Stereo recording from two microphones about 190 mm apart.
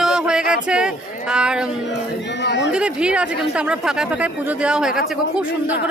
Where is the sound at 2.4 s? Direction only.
65° left (ahead or behind).